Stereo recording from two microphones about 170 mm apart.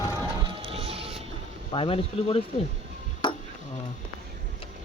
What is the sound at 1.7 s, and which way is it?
Speech, 30° left (ahead or behind).